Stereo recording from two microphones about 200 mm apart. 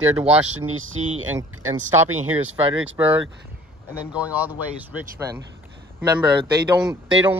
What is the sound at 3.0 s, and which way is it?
Speech, 15° right (ahead or behind).